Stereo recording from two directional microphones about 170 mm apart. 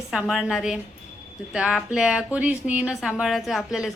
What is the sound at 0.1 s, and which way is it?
Speech, centre (ahead or behind).